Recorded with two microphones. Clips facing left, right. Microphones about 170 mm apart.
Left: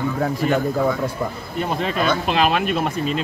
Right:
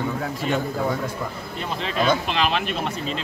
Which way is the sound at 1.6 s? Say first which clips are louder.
Left 4 dB; 45° left (ahead or behind).